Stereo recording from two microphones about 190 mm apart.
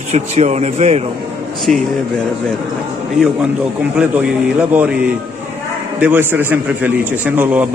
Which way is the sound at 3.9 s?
5° right (ahead or behind).